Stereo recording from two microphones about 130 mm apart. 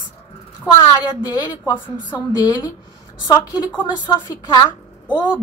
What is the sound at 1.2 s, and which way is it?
A woman's voice, 30° left (ahead or behind).